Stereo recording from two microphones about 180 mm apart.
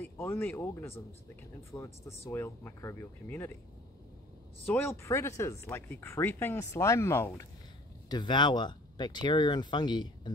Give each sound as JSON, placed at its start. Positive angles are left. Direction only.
{"t": 0.0, "sound": "speech", "side_deg": 15}
{"t": 4.6, "sound": "speech", "side_deg": 10}
{"t": 8.1, "sound": "speech", "side_deg": 25}